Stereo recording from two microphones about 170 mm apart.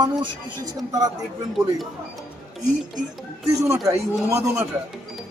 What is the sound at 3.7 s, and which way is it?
Speech, 15° right (ahead or behind).